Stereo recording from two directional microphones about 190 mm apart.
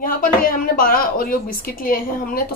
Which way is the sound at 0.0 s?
50° left (ahead or behind).